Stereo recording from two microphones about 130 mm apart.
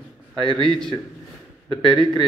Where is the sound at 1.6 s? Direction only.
45° right (ahead or behind).